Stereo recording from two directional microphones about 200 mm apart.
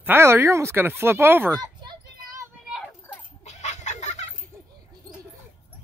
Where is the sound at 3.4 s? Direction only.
35° left (ahead or behind).